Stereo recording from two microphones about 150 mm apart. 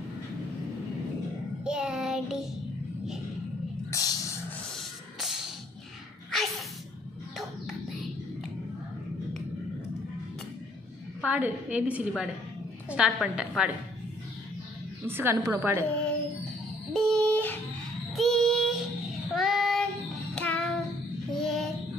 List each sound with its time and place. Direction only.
1.6 s child singing: 5° right (ahead or behind)
3.9 s a sound: 25° left (ahead or behind)
4.6 s spray: centre (ahead or behind)
7.3 s music: centre (ahead or behind)
11.1 s a woman's voice: 10° right (ahead or behind)
15.0 s a woman's voice: 15° right (ahead or behind)
16.9 s a sound: 5° left (ahead or behind)
18.1 s child singing: centre (ahead or behind)